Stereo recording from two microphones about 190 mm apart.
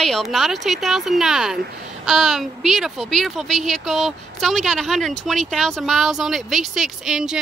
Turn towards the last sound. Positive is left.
turn(degrees=-5)  # may be behind; listen again after turning